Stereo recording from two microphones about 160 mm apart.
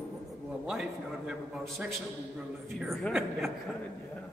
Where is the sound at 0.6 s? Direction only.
5° right (ahead or behind).